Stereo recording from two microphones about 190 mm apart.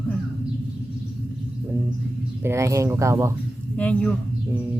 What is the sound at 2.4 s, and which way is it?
Speech, 15° right (ahead or behind).